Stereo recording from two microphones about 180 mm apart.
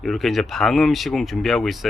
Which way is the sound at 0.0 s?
Centre (ahead or behind).